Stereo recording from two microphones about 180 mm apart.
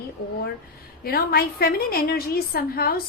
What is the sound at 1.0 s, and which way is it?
A woman's voice, 55° left (ahead or behind).